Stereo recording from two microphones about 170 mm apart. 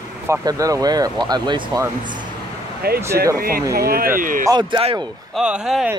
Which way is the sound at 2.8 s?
65° right (ahead or behind).